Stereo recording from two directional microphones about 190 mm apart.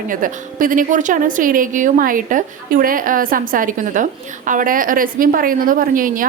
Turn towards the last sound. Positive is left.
turn(degrees=-45)  # may be behind; listen again after turning